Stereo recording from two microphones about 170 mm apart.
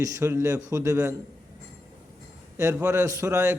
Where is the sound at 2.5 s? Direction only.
15° right (ahead or behind).